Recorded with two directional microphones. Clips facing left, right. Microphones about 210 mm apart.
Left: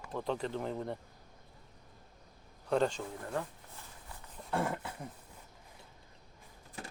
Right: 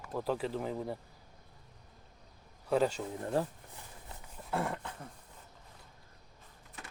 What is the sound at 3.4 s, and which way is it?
Speech, 35° right (ahead or behind).